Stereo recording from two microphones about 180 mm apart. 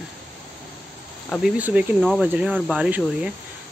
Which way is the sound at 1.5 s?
10° right (ahead or behind).